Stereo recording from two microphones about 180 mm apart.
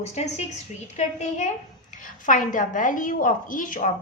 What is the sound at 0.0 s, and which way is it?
A woman's voice, 40° left (ahead or behind).